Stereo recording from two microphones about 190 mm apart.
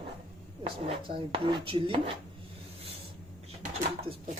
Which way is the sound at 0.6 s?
30° right (ahead or behind).